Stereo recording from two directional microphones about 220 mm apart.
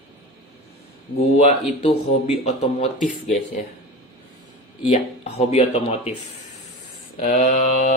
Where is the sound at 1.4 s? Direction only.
30° left (ahead or behind).